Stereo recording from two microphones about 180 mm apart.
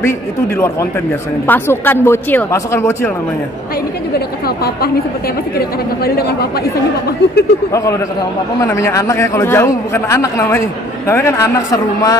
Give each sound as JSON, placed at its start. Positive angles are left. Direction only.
{"t": 1.5, "sound": "a man's voice", "side_deg": 10}
{"t": 5.6, "sound": "speech", "side_deg": 60}
{"t": 8.5, "sound": "a man's voice", "side_deg": 15}